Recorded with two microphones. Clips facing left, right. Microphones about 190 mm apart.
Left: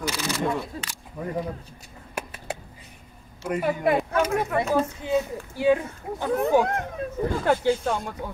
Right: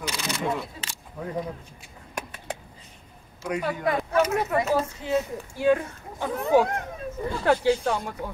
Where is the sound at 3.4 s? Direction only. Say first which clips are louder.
Left 2 dB; 5° left (ahead or behind).